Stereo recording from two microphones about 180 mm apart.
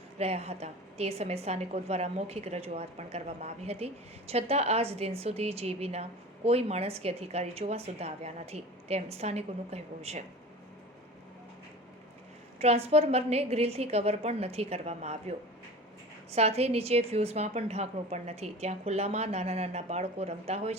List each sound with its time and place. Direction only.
0.2 s a woman's voice: 35° right (ahead or behind)
12.5 s a woman's voice: 35° right (ahead or behind)